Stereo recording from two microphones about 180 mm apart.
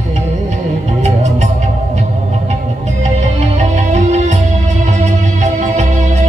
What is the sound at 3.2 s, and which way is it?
Music, 40° right (ahead or behind).